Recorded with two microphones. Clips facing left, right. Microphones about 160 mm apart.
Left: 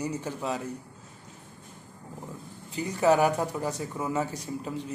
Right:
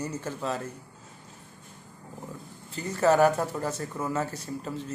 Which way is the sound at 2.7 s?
15° left (ahead or behind).